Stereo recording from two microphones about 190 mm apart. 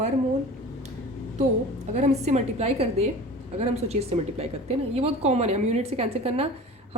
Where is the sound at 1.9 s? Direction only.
35° right (ahead or behind).